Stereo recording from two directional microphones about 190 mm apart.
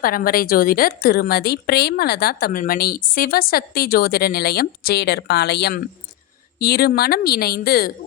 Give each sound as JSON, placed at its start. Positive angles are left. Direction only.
{"t": 0.0, "sound": "a woman's voice", "side_deg": 50}